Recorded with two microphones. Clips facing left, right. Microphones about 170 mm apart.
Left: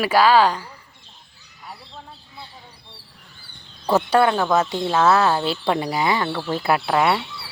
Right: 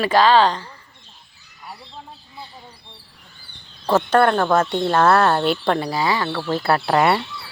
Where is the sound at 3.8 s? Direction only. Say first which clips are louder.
Right 1 dB; 10° left (ahead or behind).